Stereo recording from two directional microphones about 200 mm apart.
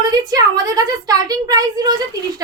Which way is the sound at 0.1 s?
20° right (ahead or behind).